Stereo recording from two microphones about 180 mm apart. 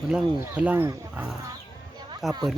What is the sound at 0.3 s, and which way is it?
Speech, 10° right (ahead or behind).